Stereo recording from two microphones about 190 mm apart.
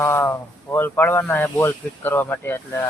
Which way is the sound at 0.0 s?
15° left (ahead or behind).